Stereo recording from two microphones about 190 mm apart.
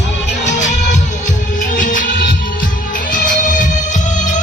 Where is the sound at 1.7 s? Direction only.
45° left (ahead or behind).